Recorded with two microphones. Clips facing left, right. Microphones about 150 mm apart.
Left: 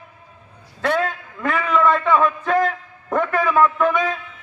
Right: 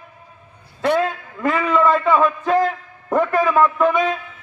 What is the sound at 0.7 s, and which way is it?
A man's voice, 15° right (ahead or behind).